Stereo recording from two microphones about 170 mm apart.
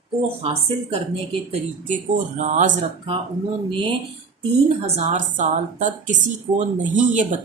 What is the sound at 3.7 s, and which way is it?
Speech, 30° right (ahead or behind).